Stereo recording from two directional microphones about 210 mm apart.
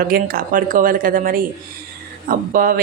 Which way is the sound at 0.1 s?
45° right (ahead or behind).